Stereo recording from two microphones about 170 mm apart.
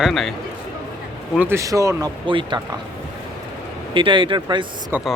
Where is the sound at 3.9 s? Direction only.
30° right (ahead or behind).